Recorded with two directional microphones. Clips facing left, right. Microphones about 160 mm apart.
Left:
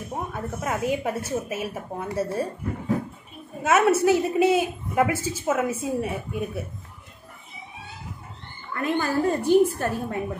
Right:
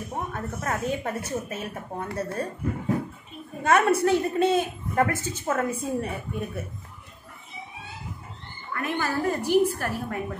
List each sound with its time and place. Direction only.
0.1 s a woman's voice: 10° left (ahead or behind)
3.6 s a woman's voice: 5° left (ahead or behind)
8.7 s a woman's voice: 25° left (ahead or behind)